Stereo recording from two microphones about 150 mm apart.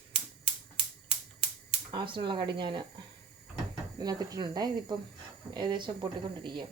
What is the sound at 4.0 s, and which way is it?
Speech, 25° right (ahead or behind).